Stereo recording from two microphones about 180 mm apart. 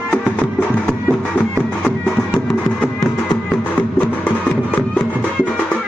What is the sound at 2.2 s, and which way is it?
Music, 5° right (ahead or behind).